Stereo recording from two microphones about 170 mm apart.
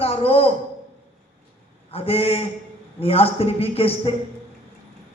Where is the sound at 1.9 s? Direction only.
35° left (ahead or behind).